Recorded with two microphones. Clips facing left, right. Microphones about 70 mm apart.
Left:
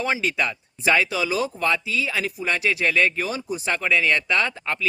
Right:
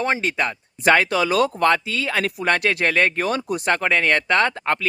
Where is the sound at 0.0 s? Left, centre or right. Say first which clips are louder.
Right 2 dB; right.